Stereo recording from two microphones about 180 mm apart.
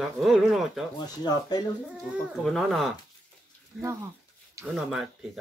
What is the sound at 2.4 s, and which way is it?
Speech, centre (ahead or behind).